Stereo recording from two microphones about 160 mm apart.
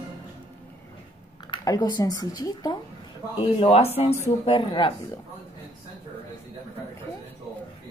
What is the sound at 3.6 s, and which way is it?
Speech, 40° left (ahead or behind).